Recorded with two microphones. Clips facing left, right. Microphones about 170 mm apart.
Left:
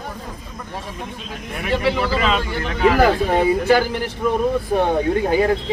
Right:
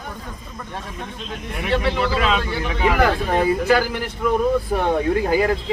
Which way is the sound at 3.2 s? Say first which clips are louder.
Left 2 dB; 20° left (ahead or behind).